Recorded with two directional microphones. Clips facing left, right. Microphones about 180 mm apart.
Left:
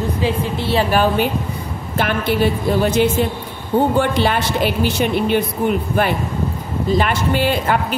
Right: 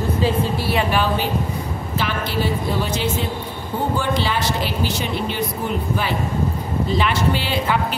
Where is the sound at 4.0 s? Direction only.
60° left (ahead or behind).